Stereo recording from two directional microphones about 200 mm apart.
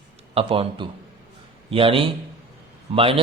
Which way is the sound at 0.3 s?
25° right (ahead or behind).